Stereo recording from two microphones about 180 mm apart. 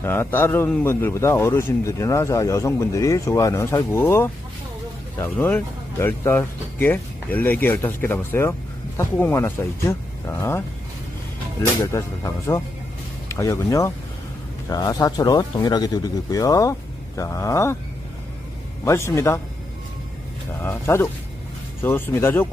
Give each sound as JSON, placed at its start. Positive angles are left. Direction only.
{"t": 0.0, "sound": "speech", "side_deg": 10}
{"t": 11.8, "sound": "speech", "side_deg": 15}
{"t": 18.9, "sound": "speech", "side_deg": 15}
{"t": 20.6, "sound": "speech", "side_deg": 15}